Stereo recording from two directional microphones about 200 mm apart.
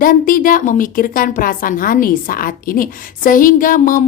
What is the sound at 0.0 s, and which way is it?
A woman's voice, 45° left (ahead or behind).